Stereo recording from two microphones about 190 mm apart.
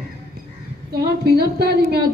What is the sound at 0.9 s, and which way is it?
A woman's voice, 55° right (ahead or behind).